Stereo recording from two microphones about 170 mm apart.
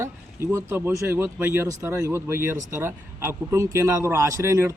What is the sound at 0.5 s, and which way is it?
A man's voice, 15° right (ahead or behind).